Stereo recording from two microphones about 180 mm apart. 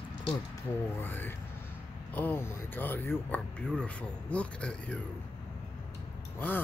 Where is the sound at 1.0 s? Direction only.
10° left (ahead or behind).